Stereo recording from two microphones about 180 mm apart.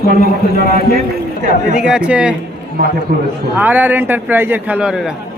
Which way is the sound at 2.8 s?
55° right (ahead or behind).